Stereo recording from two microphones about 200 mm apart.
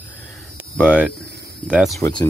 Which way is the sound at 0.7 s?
5° right (ahead or behind).